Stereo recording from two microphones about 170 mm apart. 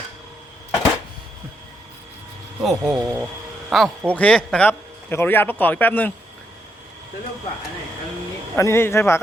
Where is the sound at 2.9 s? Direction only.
10° right (ahead or behind).